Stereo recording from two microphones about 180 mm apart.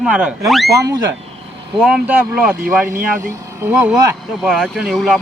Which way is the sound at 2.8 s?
45° right (ahead or behind).